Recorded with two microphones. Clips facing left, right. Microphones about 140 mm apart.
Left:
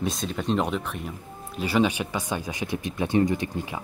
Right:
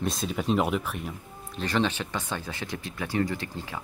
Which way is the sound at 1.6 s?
10° left (ahead or behind).